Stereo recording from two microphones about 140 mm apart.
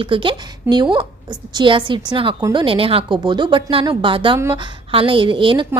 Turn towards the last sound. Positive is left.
turn(degrees=-35)  # may be behind; listen again after turning